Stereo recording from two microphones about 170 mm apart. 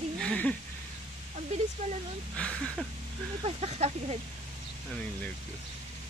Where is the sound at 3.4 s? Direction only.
35° right (ahead or behind).